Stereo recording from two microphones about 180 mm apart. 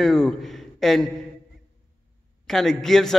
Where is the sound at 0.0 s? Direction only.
Centre (ahead or behind).